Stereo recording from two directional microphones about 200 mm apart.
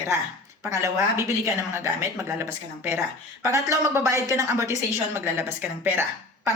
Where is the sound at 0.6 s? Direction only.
15° right (ahead or behind).